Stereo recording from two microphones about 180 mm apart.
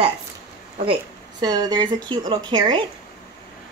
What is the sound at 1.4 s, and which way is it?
Speech, 20° right (ahead or behind).